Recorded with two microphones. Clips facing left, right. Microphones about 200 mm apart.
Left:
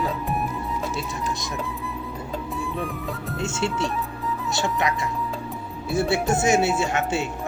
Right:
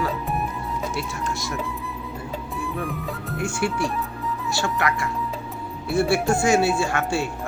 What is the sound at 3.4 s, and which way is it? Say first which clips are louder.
Speech: right 1 dB; 25° left (ahead or behind).